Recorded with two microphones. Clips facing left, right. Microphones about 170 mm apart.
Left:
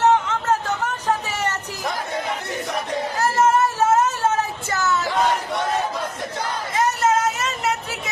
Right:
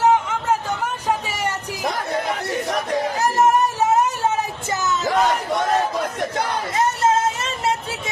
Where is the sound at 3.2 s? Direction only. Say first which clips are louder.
Even; 15° right (ahead or behind).